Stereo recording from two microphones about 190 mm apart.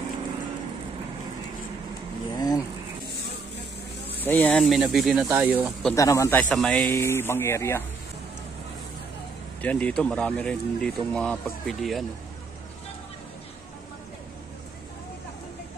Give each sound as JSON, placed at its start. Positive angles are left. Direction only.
{"t": 2.3, "sound": "a sound", "side_deg": 20}
{"t": 4.2, "sound": "speech", "side_deg": 10}
{"t": 5.9, "sound": "speech", "side_deg": 15}
{"t": 6.5, "sound": "speech", "side_deg": 5}
{"t": 9.6, "sound": "speech", "side_deg": 5}